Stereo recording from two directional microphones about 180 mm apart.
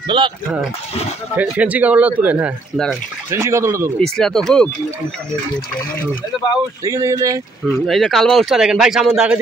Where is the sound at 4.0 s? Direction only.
5° left (ahead or behind).